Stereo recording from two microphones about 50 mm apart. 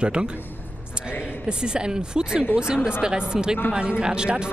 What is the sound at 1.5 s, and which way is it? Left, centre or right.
Speech, centre.